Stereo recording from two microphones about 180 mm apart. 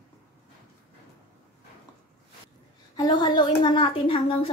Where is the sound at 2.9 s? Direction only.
25° left (ahead or behind).